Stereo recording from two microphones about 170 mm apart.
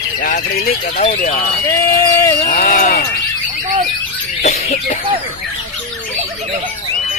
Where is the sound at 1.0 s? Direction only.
50° left (ahead or behind).